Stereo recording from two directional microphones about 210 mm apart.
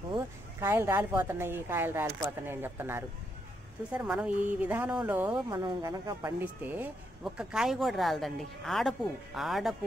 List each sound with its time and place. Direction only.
0.1 s speech: 10° right (ahead or behind)
5.3 s speech: 20° right (ahead or behind); by 9.8 s centre (ahead or behind)